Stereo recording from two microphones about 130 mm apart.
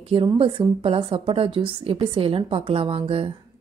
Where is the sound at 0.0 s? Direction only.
45° right (ahead or behind).